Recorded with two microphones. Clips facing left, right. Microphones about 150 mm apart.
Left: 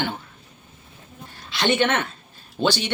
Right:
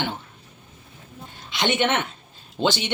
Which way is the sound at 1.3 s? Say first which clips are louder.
Left 2 dB; 20° right (ahead or behind).